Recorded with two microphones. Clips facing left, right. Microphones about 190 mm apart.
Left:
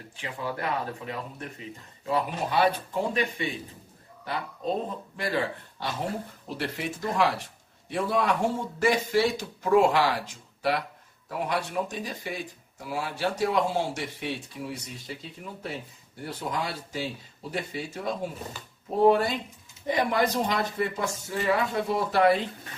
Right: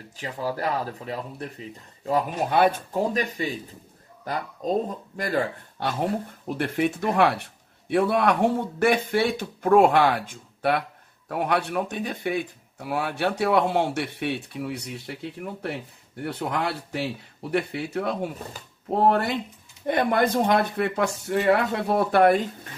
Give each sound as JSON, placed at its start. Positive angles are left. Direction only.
{"t": 0.1, "sound": "speech", "side_deg": -40}
{"t": 6.5, "sound": "speech", "side_deg": -55}